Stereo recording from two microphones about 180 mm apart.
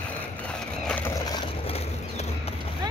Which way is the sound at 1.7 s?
35° left (ahead or behind).